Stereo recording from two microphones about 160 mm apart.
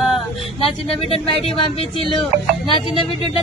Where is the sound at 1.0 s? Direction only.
35° left (ahead or behind).